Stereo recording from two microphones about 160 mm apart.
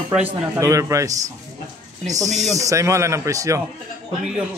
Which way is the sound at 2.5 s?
20° right (ahead or behind).